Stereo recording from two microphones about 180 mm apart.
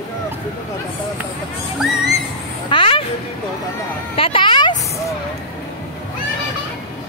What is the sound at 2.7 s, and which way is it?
Speech, 30° left (ahead or behind).